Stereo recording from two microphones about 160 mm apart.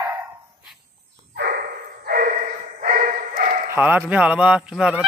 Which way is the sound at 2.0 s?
65° right (ahead or behind).